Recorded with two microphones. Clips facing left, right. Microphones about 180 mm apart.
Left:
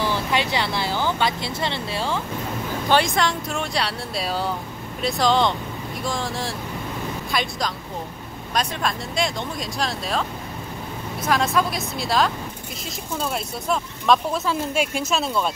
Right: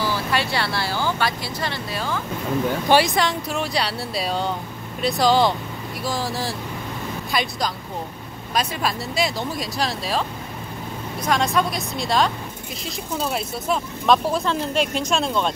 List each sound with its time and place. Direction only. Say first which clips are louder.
0.0 s speech: even; 20° left (ahead or behind)
2.9 s speech: right 1 dB; 5° right (ahead or behind)
8.5 s speech: right 1 dB; 5° right (ahead or behind)
11.2 s speech: even; centre (ahead or behind)